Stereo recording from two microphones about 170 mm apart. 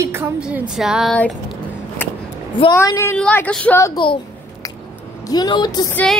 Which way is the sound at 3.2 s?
5° left (ahead or behind).